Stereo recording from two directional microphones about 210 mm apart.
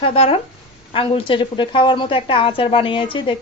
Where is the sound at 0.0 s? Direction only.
25° left (ahead or behind).